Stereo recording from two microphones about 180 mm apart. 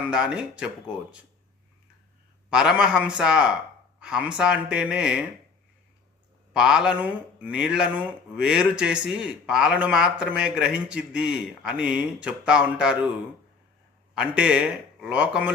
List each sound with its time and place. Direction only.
0.0 s speech: 5° right (ahead or behind)
2.5 s speech: 5° right (ahead or behind)
6.5 s speech: 5° right (ahead or behind)
14.2 s speech: 5° right (ahead or behind)